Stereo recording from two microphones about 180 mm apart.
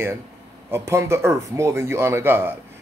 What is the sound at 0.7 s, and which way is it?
Speech, 15° right (ahead or behind).